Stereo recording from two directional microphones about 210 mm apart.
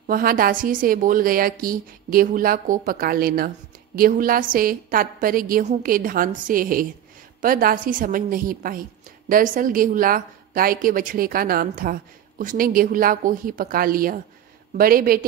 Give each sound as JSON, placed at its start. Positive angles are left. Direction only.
{"t": 0.0, "sound": "a woman's voice", "side_deg": -45}